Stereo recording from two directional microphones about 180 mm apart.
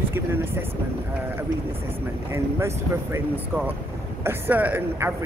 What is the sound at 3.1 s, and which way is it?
Speech, 10° right (ahead or behind).